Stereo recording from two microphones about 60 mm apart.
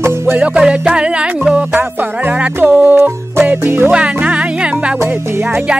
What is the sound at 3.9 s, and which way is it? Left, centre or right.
Music, centre.